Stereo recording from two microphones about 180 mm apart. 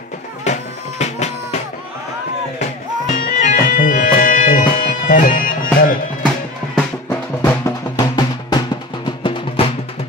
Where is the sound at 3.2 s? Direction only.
50° left (ahead or behind).